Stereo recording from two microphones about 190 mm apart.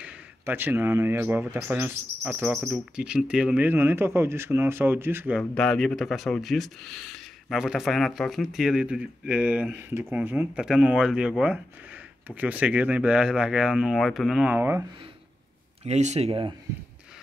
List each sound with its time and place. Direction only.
0.0 s speech: 10° right (ahead or behind)
5.4 s speech: 5° left (ahead or behind)
15.8 s speech: 35° right (ahead or behind)